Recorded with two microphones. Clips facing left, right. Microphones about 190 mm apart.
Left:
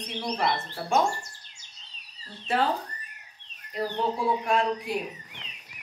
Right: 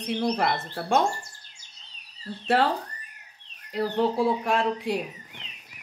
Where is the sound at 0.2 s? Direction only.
60° right (ahead or behind).